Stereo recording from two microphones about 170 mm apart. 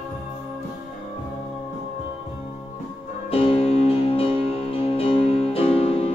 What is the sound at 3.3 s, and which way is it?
Music, 35° left (ahead or behind).